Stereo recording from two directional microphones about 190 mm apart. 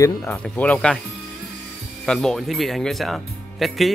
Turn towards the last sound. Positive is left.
turn(degrees=0)  # may be behind; listen again after turning